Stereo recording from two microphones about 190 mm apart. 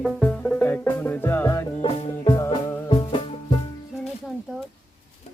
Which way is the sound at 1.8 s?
30° left (ahead or behind).